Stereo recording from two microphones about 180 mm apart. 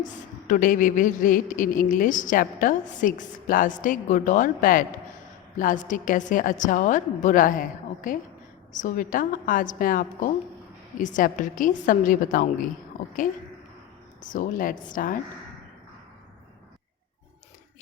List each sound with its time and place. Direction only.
0.4 s a woman's voice: 50° left (ahead or behind)
14.2 s a woman's voice: 50° left (ahead or behind)